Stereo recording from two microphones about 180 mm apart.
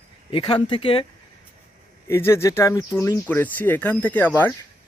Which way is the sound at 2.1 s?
15° left (ahead or behind).